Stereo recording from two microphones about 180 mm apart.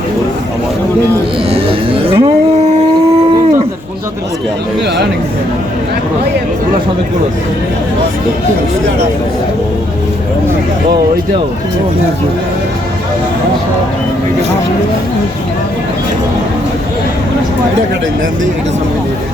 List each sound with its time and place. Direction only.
1.5 s vehicle: 30° right (ahead or behind)